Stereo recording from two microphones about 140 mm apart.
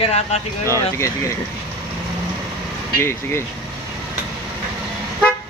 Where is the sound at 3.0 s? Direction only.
20° left (ahead or behind).